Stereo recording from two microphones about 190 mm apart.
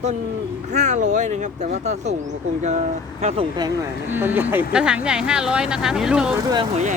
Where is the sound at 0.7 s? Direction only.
40° right (ahead or behind).